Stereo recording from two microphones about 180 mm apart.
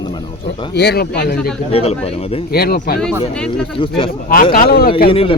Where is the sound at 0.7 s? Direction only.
65° left (ahead or behind).